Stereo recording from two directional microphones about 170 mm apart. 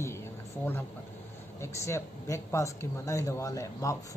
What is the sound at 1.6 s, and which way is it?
Speech, 15° left (ahead or behind).